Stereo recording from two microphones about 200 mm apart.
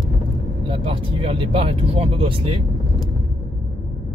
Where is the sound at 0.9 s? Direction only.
25° right (ahead or behind).